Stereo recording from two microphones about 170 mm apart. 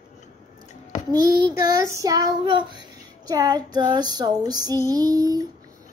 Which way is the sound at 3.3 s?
25° right (ahead or behind).